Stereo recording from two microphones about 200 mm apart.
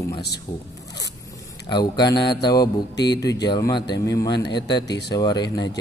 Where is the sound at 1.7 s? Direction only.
20° left (ahead or behind).